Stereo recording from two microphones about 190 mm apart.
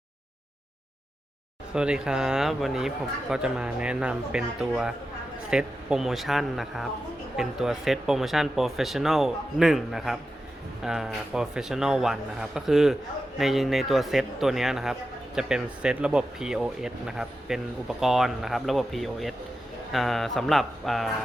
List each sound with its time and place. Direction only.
1.7 s speech: 5° right (ahead or behind)